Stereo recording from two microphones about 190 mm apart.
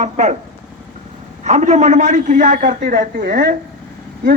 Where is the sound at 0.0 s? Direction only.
40° right (ahead or behind).